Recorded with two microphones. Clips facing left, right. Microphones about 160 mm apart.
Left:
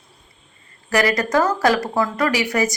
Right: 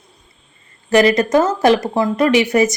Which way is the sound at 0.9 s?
20° right (ahead or behind).